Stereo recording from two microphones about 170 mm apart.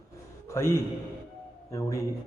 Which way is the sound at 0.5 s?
15° left (ahead or behind).